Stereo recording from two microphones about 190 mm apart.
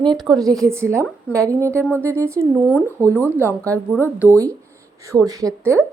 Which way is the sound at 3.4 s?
10° left (ahead or behind).